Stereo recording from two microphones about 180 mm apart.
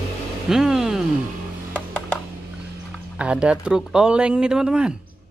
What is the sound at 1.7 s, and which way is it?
Music, 10° left (ahead or behind).